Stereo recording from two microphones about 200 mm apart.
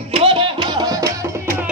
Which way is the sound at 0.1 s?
25° right (ahead or behind).